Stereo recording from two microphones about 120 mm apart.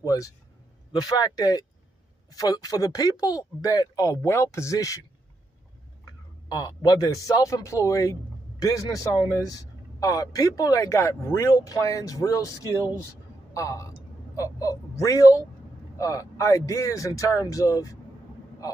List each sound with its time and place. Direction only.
0.0 s speech: 30° left (ahead or behind)
6.5 s a man's voice: 30° left (ahead or behind)